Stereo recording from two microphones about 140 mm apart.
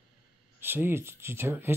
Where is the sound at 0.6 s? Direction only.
15° right (ahead or behind).